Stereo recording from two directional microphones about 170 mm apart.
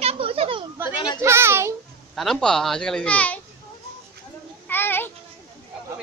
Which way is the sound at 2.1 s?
Centre (ahead or behind).